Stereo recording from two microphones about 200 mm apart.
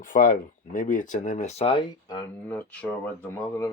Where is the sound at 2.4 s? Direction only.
10° left (ahead or behind).